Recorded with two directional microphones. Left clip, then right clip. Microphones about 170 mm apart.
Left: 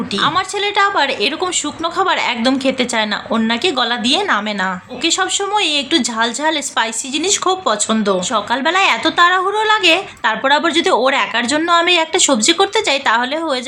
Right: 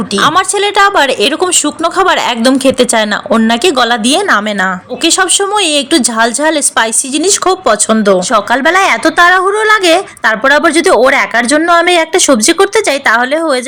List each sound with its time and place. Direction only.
0.1 s a woman's voice: 45° right (ahead or behind)